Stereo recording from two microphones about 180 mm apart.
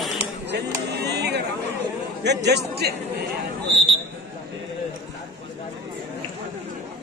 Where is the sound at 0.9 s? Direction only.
65° right (ahead or behind).